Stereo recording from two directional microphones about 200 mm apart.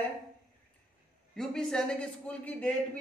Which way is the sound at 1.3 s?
5° left (ahead or behind).